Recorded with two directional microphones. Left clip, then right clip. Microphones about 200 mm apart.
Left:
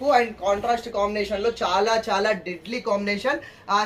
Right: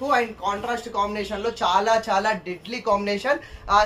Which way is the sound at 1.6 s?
25° right (ahead or behind).